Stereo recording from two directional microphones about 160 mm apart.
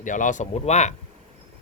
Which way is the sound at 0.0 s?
50° left (ahead or behind).